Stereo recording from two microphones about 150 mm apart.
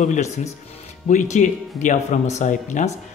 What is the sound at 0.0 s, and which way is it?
Speech, 50° left (ahead or behind).